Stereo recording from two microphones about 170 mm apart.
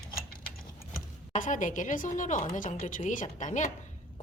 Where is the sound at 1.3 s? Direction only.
50° left (ahead or behind).